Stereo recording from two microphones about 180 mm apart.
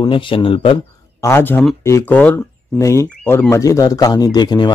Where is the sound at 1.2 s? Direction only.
10° left (ahead or behind).